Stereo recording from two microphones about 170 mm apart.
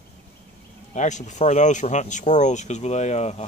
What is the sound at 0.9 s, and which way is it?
Speech, 45° left (ahead or behind).